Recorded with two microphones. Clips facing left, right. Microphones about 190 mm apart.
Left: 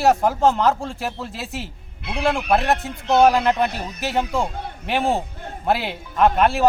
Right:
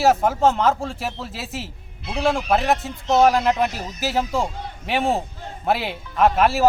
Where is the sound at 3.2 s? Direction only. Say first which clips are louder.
Left 1 dB; centre (ahead or behind).